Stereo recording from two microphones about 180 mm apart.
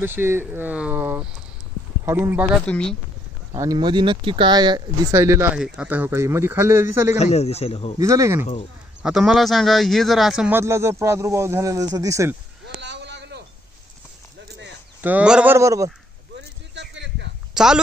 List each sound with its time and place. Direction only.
0.0 s a man's voice: 15° right (ahead or behind)
2.6 s speech: 5° left (ahead or behind)
3.5 s a man's voice: 20° right (ahead or behind)
7.2 s a man's voice: 35° left (ahead or behind)
8.0 s a man's voice: 15° right (ahead or behind)
9.0 s a man's voice: centre (ahead or behind)
12.8 s a sound: 75° right (ahead or behind)
15.0 s a man's voice: 10° right (ahead or behind)
16.3 s a sound: 75° right (ahead or behind)
17.6 s speech: 5° right (ahead or behind)